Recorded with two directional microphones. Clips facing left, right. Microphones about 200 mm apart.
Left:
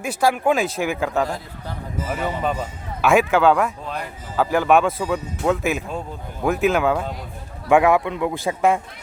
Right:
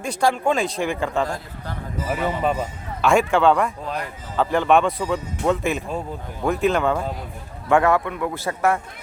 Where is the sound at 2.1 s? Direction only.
5° right (ahead or behind).